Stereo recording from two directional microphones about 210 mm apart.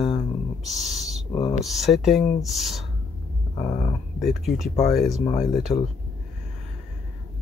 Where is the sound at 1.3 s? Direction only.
20° left (ahead or behind).